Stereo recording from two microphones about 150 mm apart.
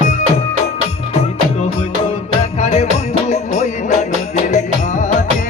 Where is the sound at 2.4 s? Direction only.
45° left (ahead or behind).